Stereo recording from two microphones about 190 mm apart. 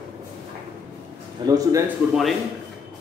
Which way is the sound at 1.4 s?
20° right (ahead or behind).